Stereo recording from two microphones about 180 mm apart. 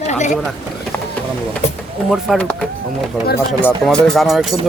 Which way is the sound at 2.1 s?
Centre (ahead or behind).